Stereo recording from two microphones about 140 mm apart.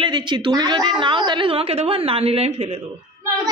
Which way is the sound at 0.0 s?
35° right (ahead or behind).